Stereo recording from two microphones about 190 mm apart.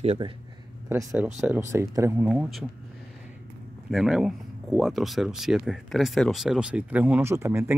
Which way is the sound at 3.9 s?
Centre (ahead or behind).